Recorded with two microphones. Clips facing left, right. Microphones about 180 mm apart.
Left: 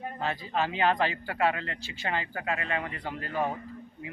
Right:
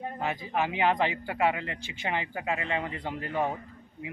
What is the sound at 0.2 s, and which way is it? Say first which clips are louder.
A man's voice: even; 15° right (ahead or behind).